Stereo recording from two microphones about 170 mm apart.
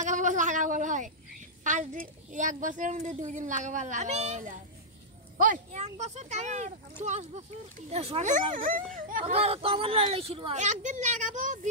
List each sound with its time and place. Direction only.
0.0 s a sound: 45° right (ahead or behind)
1.6 s a woman's voice: 45° right (ahead or behind)
9.2 s speech: 35° right (ahead or behind)